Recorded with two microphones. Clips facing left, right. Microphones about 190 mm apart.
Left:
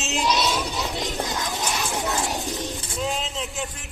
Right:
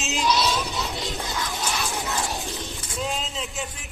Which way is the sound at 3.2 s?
Centre (ahead or behind).